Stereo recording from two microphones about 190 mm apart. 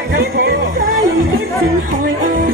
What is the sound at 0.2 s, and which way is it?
Music, 55° right (ahead or behind).